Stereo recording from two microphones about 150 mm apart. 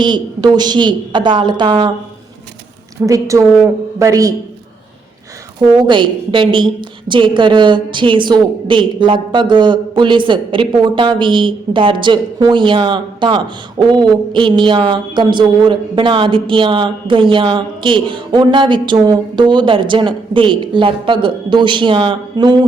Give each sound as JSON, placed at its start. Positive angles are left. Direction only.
{"t": 0.0, "sound": "a woman's voice", "side_deg": -30}
{"t": 3.1, "sound": "a man's voice", "side_deg": -20}
{"t": 5.7, "sound": "a woman's voice", "side_deg": -30}